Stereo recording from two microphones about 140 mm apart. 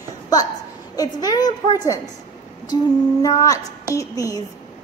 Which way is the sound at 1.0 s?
30° left (ahead or behind).